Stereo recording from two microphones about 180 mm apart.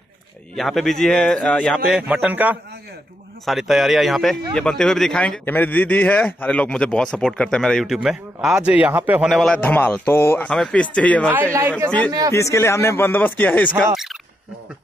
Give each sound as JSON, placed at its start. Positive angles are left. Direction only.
{"t": 0.6, "sound": "speech", "side_deg": 0}
{"t": 12.1, "sound": "speech", "side_deg": -20}
{"t": 12.4, "sound": "speech", "side_deg": 15}